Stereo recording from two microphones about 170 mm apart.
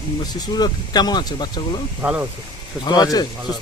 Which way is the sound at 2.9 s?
20° left (ahead or behind).